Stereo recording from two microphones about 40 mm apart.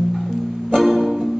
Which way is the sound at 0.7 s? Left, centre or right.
Centre.